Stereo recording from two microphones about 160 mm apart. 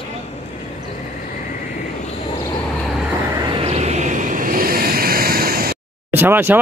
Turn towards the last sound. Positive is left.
turn(degrees=-10)  # may be behind; listen again after turning